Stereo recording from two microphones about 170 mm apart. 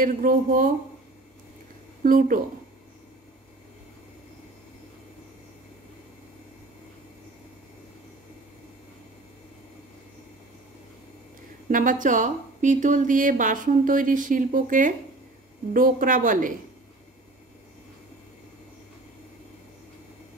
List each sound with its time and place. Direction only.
0.0 s a woman's voice: 55° right (ahead or behind)
2.0 s a woman's voice: 55° right (ahead or behind)
11.7 s a woman's voice: 50° right (ahead or behind)